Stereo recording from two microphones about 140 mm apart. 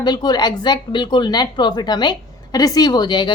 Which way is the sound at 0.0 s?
30° left (ahead or behind).